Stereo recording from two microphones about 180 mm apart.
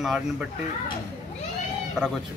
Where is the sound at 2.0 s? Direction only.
5° right (ahead or behind).